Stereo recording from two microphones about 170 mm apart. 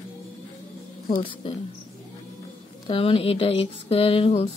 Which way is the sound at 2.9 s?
35° left (ahead or behind).